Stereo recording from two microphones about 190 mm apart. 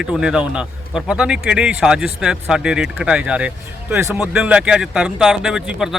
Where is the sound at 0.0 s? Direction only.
5° right (ahead or behind).